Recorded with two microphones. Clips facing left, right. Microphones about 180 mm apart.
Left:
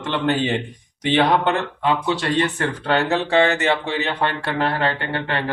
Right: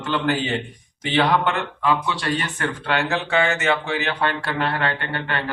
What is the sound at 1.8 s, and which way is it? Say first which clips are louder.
A man's voice: even; 25° left (ahead or behind).